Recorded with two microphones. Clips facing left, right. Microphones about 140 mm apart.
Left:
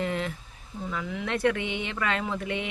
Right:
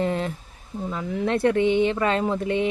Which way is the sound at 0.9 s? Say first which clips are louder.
Right 6 dB; 35° right (ahead or behind).